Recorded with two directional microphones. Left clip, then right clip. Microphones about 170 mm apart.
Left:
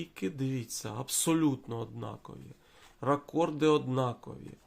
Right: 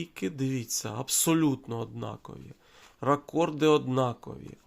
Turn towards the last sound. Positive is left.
turn(degrees=-30)  # may be behind; listen again after turning